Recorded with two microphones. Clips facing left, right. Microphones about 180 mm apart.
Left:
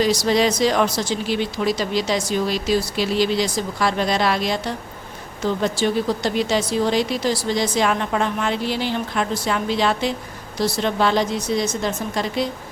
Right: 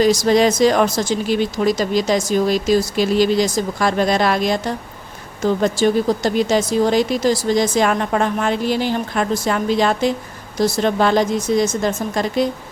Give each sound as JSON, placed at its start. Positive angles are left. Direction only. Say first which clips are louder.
{"t": 0.0, "sound": "speech", "louder": "right 4 dB", "side_deg": -45}